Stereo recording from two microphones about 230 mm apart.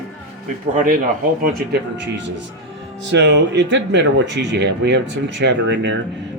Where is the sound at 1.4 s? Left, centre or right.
Right.